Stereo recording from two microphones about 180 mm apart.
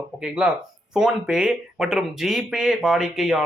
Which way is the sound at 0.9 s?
5° right (ahead or behind).